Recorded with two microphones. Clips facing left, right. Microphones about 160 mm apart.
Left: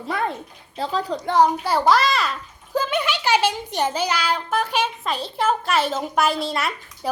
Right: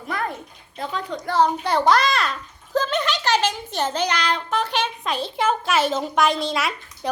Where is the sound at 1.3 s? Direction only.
10° left (ahead or behind).